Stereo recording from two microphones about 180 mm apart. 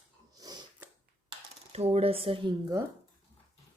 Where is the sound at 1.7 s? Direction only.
35° right (ahead or behind).